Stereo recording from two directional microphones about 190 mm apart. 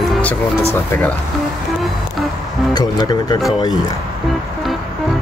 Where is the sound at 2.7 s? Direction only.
20° left (ahead or behind).